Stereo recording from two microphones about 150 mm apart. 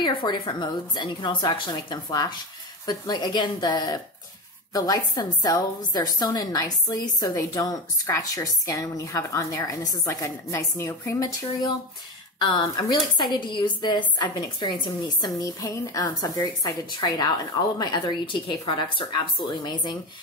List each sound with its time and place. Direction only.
0.0 s a woman's voice: 30° left (ahead or behind)